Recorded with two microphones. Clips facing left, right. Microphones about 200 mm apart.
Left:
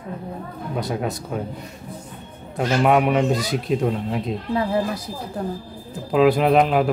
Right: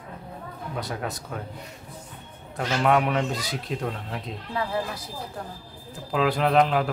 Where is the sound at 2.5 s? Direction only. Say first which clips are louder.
Left 5 dB; 15° left (ahead or behind).